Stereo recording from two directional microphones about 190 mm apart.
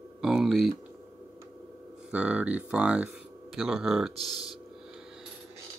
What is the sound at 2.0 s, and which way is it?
Speech, 5° right (ahead or behind).